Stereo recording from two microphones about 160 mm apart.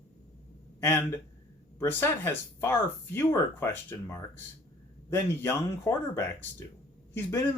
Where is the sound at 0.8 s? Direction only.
15° left (ahead or behind).